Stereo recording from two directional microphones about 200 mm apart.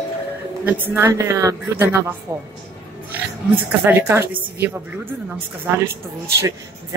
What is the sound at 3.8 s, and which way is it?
Speech, 10° right (ahead or behind).